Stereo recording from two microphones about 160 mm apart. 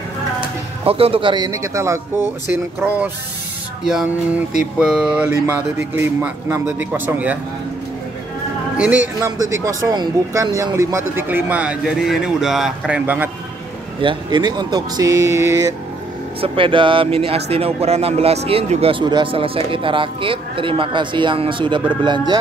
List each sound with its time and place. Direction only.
0.8 s speech: 35° right (ahead or behind); by 7.3 s 10° right (ahead or behind)
8.7 s speech: 10° right (ahead or behind)
9.2 s speech: 20° right (ahead or behind)
14.0 s speech: 30° right (ahead or behind)
16.3 s speech: 35° right (ahead or behind)